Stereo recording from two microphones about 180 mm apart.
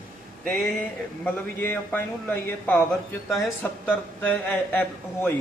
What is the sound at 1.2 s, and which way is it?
Speech, 10° left (ahead or behind).